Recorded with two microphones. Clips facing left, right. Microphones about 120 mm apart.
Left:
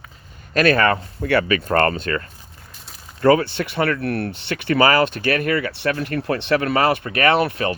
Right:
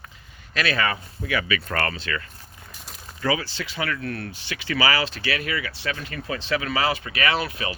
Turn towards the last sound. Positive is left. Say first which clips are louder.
# left 8 dB
turn(degrees=55)  # may be behind; listen again after turning